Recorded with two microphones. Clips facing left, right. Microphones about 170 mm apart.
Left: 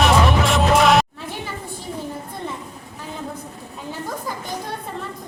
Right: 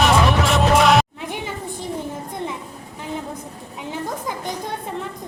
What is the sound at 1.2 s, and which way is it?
Children playing, 15° right (ahead or behind).